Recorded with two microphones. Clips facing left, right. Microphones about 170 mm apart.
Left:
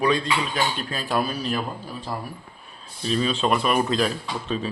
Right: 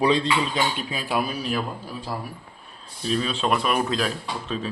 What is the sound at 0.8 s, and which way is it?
Speech, 10° right (ahead or behind).